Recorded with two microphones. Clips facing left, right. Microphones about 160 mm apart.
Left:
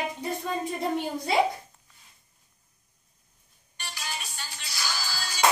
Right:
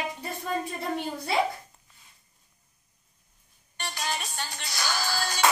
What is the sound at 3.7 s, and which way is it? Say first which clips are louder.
Speech: right 6 dB; 55° right (ahead or behind).